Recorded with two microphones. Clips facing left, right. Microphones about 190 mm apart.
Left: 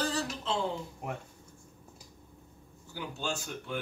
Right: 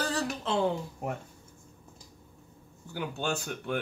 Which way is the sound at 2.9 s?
60° right (ahead or behind).